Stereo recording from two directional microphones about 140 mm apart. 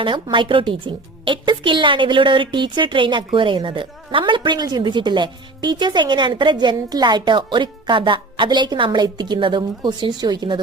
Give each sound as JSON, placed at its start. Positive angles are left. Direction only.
{"t": 0.0, "sound": "a woman's voice", "side_deg": -35}